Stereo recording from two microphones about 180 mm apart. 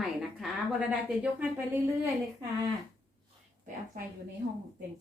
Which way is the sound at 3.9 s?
50° right (ahead or behind).